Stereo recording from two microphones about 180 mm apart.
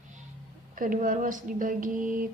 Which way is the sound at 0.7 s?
50° right (ahead or behind).